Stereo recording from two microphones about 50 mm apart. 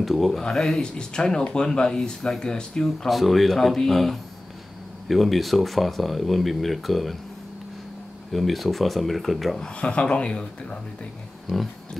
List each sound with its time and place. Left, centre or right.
0.0 s speech: centre
3.1 s speech: centre
8.3 s speech: centre
9.6 s speech: left
11.4 s speech: centre